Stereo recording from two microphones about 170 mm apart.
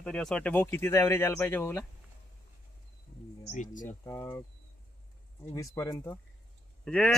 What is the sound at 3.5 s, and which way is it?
Speech, 50° left (ahead or behind).